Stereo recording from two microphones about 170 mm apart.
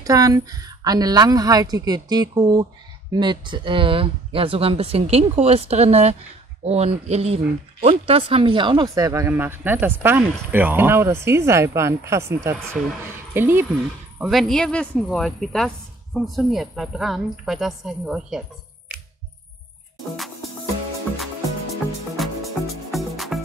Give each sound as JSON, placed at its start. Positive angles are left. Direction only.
{"t": 0.0, "sound": "a woman's voice", "side_deg": -20}
{"t": 14.3, "sound": "speech", "side_deg": 5}
{"t": 22.1, "sound": "music", "side_deg": 0}